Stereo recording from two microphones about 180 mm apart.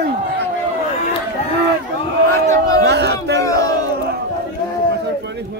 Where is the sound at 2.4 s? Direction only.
20° left (ahead or behind).